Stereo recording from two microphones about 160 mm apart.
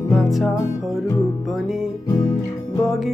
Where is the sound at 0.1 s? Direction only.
Centre (ahead or behind).